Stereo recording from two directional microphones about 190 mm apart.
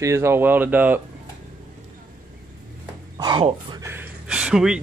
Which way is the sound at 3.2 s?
20° right (ahead or behind).